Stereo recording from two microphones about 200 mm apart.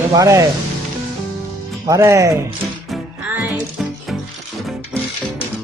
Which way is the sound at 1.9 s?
15° right (ahead or behind).